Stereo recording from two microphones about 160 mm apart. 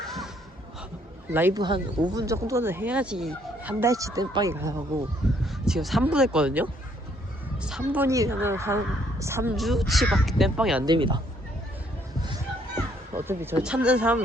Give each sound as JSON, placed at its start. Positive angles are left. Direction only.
{"t": 0.0, "sound": "a sound", "side_deg": 0}
{"t": 1.3, "sound": "speech", "side_deg": -15}
{"t": 1.5, "sound": "speech", "side_deg": -25}
{"t": 5.5, "sound": "speech", "side_deg": 0}
{"t": 7.6, "sound": "music", "side_deg": -5}
{"t": 8.0, "sound": "speech", "side_deg": -20}
{"t": 9.6, "sound": "speech", "side_deg": 0}
{"t": 10.8, "sound": "speech", "side_deg": -30}
{"t": 13.1, "sound": "speech", "side_deg": -15}